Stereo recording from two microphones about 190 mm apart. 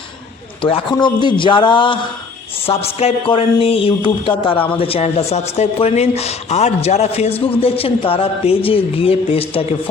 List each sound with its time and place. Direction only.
0.6 s speech: 30° left (ahead or behind)